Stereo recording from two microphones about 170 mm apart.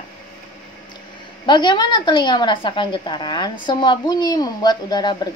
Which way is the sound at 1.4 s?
25° left (ahead or behind).